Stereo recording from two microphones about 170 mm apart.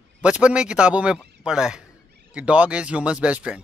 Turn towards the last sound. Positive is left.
turn(degrees=-5)  # may be behind; listen again after turning